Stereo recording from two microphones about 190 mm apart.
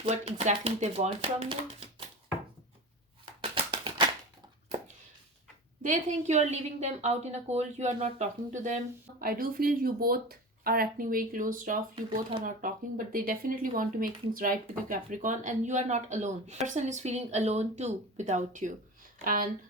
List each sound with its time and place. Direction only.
0.0 s speech: 35° right (ahead or behind)
3.4 s a sound: 30° right (ahead or behind)
5.8 s a woman's voice: 40° right (ahead or behind)